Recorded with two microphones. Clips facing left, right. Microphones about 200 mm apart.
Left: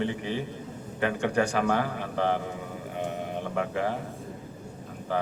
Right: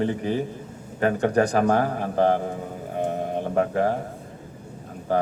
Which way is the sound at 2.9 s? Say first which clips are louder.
Right 7 dB; 40° right (ahead or behind).